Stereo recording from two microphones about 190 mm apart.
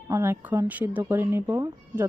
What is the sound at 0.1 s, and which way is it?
Speech, 15° right (ahead or behind).